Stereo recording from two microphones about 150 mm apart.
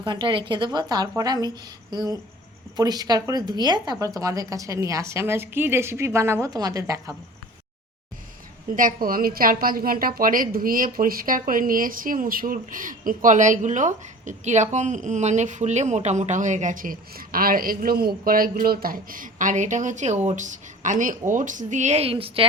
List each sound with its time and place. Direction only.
0.0 s speech: 30° right (ahead or behind)
8.7 s a woman's voice: 70° right (ahead or behind); by 22.4 s 40° right (ahead or behind)